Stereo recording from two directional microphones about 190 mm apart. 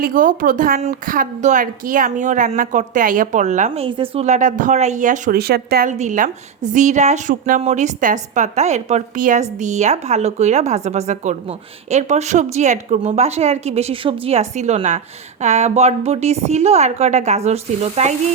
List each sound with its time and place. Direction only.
0.0 s a woman's voice: 45° right (ahead or behind)
3.8 s a woman's voice: 25° right (ahead or behind); by 5.9 s 55° right (ahead or behind)
5.9 s a woman's voice: 40° right (ahead or behind)